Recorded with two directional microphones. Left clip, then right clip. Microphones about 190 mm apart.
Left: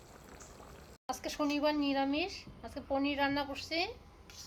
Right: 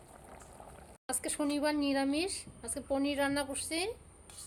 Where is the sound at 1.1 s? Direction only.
45° right (ahead or behind).